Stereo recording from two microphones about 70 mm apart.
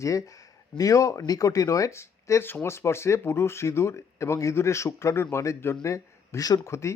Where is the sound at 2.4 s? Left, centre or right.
Left.